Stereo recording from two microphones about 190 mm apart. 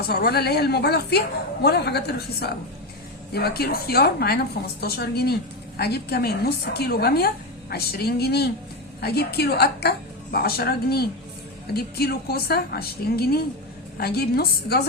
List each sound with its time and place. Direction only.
0.1 s a woman's voice: 55° left (ahead or behind)